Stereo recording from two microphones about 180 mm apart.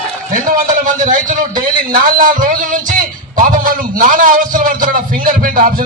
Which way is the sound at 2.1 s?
50° right (ahead or behind).